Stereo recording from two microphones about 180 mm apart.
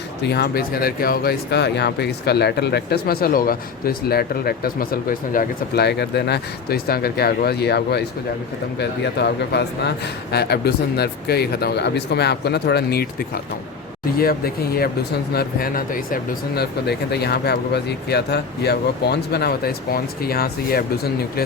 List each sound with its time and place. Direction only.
0.2 s speech: 65° left (ahead or behind)